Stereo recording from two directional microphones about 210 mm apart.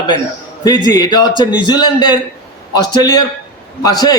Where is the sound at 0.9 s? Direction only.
20° left (ahead or behind).